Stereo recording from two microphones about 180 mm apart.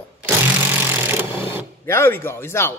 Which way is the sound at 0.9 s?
10° right (ahead or behind).